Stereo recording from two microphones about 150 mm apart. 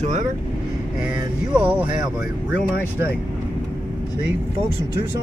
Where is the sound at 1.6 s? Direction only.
10° right (ahead or behind).